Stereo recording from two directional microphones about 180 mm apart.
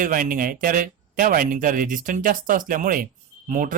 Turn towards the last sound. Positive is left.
turn(degrees=-45)  # may be behind; listen again after turning